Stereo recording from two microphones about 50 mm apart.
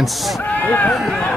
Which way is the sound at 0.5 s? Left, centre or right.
Left.